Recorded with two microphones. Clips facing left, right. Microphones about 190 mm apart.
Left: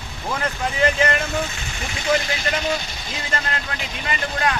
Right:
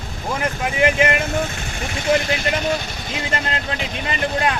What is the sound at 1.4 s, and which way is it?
Speech, 50° right (ahead or behind).